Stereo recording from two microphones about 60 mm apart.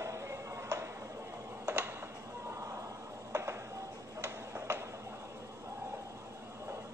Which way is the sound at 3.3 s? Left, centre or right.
Right.